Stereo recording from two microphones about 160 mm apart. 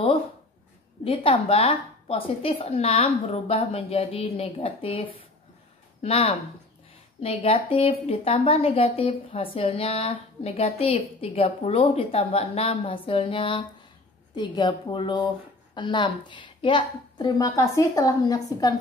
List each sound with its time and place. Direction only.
1.0 s a woman's voice: 35° left (ahead or behind)